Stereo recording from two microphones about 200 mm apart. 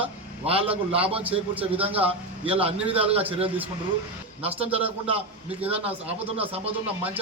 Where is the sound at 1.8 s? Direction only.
30° right (ahead or behind).